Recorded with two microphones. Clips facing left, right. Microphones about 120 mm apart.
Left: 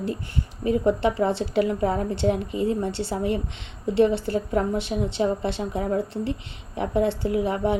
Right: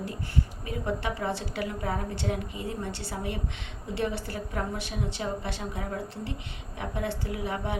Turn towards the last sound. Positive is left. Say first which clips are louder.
# left 9 dB
turn(degrees=25)  # may be behind; listen again after turning